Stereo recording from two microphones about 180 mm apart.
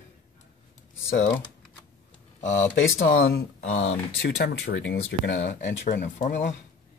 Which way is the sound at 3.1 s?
90° left.